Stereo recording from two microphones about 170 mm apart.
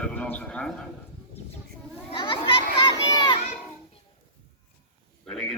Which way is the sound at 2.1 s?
30° left (ahead or behind).